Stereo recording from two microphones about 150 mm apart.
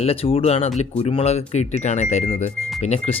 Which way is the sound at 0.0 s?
40° left (ahead or behind).